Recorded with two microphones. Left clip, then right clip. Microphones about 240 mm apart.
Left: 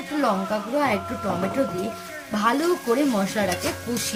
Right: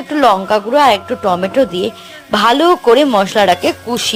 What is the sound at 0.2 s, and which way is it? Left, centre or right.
Speech, right.